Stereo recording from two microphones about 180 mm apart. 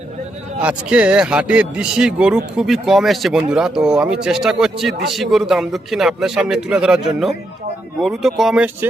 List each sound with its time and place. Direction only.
0.6 s a man's voice: 5° right (ahead or behind)